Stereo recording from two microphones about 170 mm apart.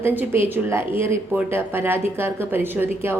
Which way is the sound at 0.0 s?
10° right (ahead or behind).